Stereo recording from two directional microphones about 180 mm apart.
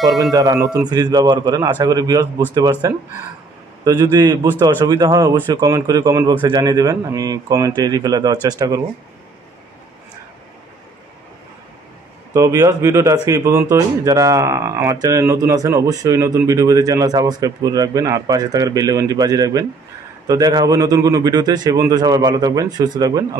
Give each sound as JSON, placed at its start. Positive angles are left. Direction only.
{"t": 0.0, "sound": "a man's voice", "side_deg": 0}
{"t": 0.3, "sound": "speech", "side_deg": -20}
{"t": 12.4, "sound": "speech", "side_deg": -15}